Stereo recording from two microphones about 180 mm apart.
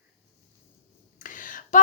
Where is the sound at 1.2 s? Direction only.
45° left (ahead or behind).